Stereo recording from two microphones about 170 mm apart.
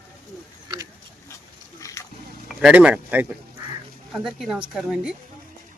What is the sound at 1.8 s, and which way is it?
Splash, 20° left (ahead or behind).